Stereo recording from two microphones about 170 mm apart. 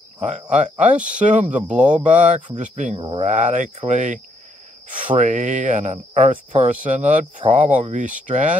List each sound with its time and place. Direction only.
0.2 s speech: 45° right (ahead or behind)
1.7 s speech: 5° right (ahead or behind)
2.1 s speech: 45° right (ahead or behind)